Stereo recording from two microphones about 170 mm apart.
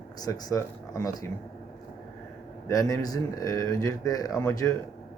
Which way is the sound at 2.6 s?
20° left (ahead or behind).